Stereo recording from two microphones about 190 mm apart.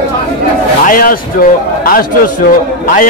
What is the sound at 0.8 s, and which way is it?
A man's voice, 45° left (ahead or behind).